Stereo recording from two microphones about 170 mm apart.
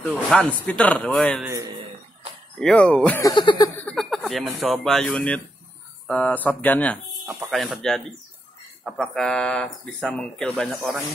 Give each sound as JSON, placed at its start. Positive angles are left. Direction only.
{"t": 0.0, "sound": "speech", "side_deg": 10}
{"t": 2.6, "sound": "speech", "side_deg": 5}
{"t": 3.3, "sound": "a sound", "side_deg": 25}
{"t": 3.7, "sound": "speech", "side_deg": 5}